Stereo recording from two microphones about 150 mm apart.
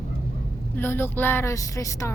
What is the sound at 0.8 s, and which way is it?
A woman's voice, 15° left (ahead or behind).